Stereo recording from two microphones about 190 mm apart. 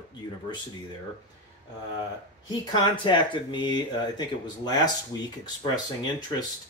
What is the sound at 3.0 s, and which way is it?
Speech, 25° left (ahead or behind).